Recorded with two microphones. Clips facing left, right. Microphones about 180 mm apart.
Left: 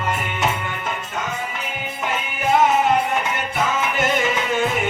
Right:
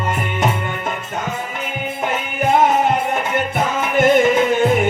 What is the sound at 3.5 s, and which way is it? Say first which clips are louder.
Music: right 3 dB; 55° right (ahead or behind).